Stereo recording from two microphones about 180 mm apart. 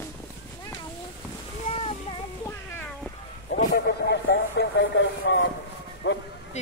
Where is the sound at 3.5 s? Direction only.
60° left (ahead or behind); by 6.2 s 90° left.